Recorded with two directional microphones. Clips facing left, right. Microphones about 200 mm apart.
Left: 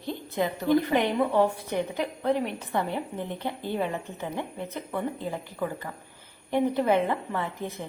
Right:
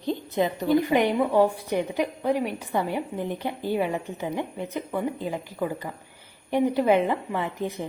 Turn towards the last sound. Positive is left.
turn(degrees=-15)  # may be behind; listen again after turning